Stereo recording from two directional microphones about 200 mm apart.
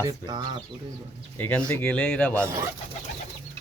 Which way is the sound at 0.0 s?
20° right (ahead or behind).